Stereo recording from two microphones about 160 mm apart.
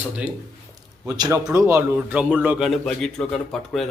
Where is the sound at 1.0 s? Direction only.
25° right (ahead or behind).